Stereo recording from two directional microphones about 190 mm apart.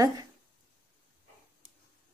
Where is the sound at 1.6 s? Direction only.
25° right (ahead or behind).